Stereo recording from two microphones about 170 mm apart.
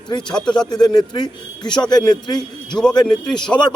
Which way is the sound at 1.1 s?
25° left (ahead or behind).